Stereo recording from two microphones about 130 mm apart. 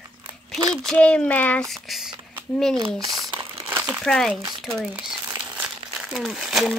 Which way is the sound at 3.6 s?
15° right (ahead or behind).